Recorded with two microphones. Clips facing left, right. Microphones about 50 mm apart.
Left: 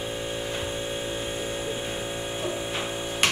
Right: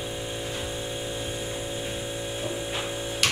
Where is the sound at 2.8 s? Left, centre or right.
Left.